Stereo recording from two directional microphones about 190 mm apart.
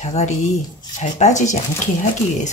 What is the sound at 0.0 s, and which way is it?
Speech, 35° left (ahead or behind).